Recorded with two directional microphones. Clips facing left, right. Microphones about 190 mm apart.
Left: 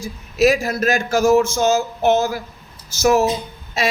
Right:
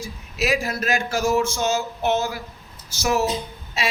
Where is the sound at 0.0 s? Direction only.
45° left (ahead or behind).